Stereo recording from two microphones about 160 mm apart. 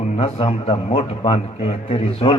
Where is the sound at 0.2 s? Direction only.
35° left (ahead or behind).